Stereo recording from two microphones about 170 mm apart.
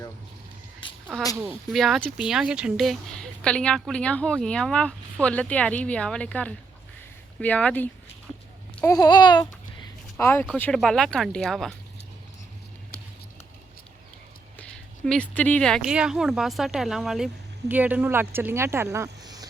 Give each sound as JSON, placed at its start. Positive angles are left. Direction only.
{"t": 0.8, "sound": "cat", "side_deg": 30}
{"t": 1.5, "sound": "a woman's voice", "side_deg": 0}
{"t": 8.8, "sound": "babbling", "side_deg": 15}
{"t": 9.0, "sound": "babbling", "side_deg": 25}
{"t": 10.2, "sound": "a woman's voice", "side_deg": 15}
{"t": 14.6, "sound": "speech", "side_deg": 5}